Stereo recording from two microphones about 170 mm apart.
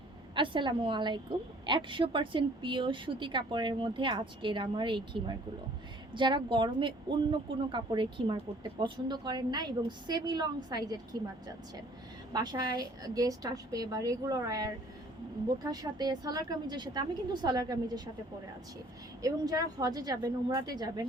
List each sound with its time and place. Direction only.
0.3 s a woman's voice: 30° right (ahead or behind)
19.2 s a woman's voice: 20° right (ahead or behind)